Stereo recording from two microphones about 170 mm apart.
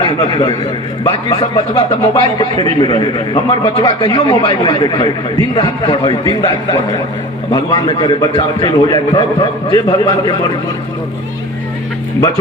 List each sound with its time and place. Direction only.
0.0 s a man's voice: 25° left (ahead or behind)